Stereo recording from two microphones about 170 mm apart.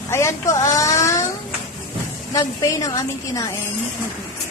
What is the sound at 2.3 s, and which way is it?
A woman's voice, 20° left (ahead or behind).